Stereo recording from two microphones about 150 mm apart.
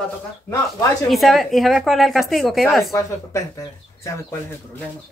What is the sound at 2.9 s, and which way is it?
Speech, 20° left (ahead or behind).